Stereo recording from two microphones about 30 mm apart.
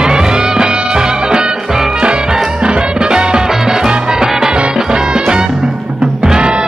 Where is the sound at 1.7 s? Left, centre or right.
Centre.